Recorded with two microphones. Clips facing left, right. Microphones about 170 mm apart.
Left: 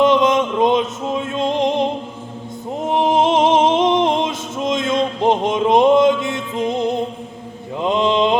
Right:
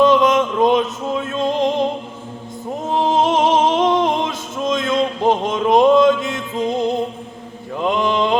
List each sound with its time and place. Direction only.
0.0 s music: 20° left (ahead or behind)
7.8 s mantra: 20° left (ahead or behind)